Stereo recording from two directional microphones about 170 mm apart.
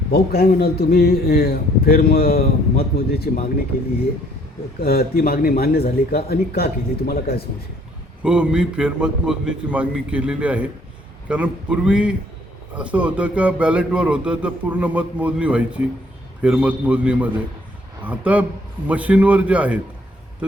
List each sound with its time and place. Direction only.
0.1 s a man's voice: 65° left (ahead or behind)
4.8 s a man's voice: 65° left (ahead or behind)
8.2 s a man's voice: 5° right (ahead or behind)